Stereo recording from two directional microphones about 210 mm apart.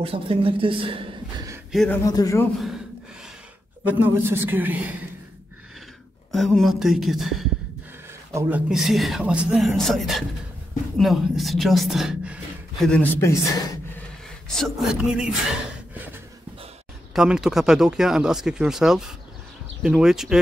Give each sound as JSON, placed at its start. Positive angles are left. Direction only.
{"t": 0.0, "sound": "a woman's voice", "side_deg": -25}
{"t": 1.7, "sound": "speech", "side_deg": 0}
{"t": 2.0, "sound": "speech", "side_deg": 15}
{"t": 3.8, "sound": "a woman's voice", "side_deg": -10}
{"t": 6.3, "sound": "speech", "side_deg": 0}
{"t": 14.5, "sound": "speech", "side_deg": 0}
{"t": 17.1, "sound": "speech", "side_deg": -5}